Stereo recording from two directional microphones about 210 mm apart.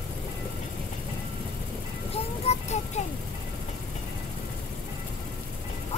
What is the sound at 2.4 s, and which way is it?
Music, 35° left (ahead or behind).